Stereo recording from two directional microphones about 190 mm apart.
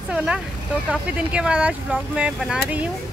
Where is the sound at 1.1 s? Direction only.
5° right (ahead or behind).